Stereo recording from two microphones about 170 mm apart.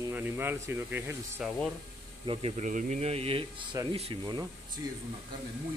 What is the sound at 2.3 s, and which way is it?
Speech, 35° right (ahead or behind).